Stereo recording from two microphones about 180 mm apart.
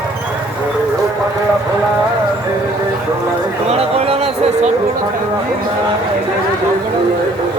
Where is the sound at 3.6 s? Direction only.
35° right (ahead or behind).